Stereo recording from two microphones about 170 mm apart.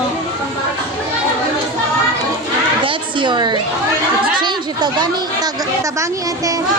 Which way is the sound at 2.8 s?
30° right (ahead or behind).